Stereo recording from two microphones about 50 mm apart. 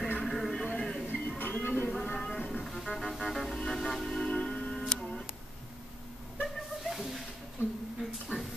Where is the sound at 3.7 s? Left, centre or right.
Centre.